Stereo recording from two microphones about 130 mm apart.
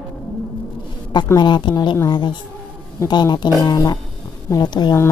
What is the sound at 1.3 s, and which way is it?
A woman's voice, 35° left (ahead or behind).